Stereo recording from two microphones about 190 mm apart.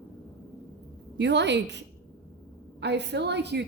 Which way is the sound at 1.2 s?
65° right (ahead or behind).